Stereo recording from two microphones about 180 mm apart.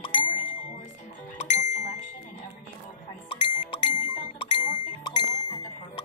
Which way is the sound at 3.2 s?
25° left (ahead or behind).